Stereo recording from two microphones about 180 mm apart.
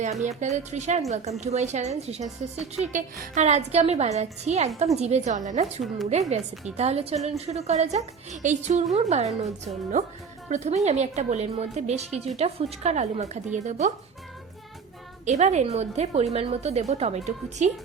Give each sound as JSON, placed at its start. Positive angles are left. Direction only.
{"t": 0.0, "sound": "a woman's voice", "side_deg": -40}
{"t": 15.2, "sound": "a woman's voice", "side_deg": -40}